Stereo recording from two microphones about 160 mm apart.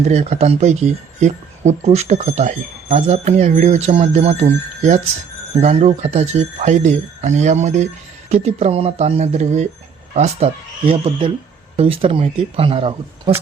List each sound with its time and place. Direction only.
0.0 s speech: 45° right (ahead or behind)